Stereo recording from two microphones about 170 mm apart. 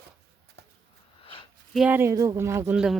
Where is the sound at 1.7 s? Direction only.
10° right (ahead or behind).